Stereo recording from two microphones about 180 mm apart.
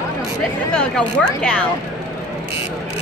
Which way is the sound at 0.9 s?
5° left (ahead or behind).